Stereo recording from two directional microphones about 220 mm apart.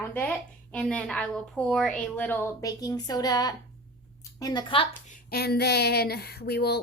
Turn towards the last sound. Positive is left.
turn(degrees=45)  # may be behind; listen again after turning